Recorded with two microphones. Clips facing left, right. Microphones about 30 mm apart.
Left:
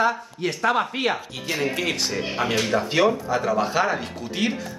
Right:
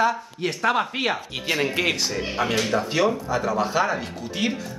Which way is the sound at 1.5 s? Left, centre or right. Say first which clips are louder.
Right 2 dB; right.